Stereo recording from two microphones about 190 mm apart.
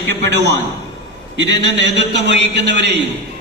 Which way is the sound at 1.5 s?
70° right (ahead or behind).